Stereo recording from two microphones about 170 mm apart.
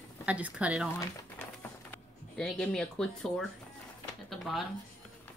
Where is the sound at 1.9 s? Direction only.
5° left (ahead or behind).